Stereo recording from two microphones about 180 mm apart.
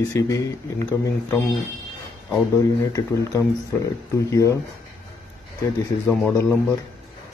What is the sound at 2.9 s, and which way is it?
Speech, 20° left (ahead or behind).